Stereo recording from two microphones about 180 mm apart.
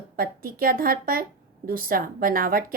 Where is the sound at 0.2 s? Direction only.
55° right (ahead or behind).